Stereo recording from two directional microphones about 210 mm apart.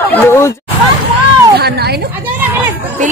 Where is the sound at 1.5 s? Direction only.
50° right (ahead or behind).